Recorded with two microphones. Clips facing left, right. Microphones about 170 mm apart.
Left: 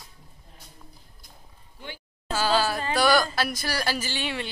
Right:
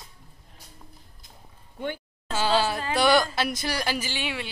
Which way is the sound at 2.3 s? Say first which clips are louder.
Even; 25° right (ahead or behind).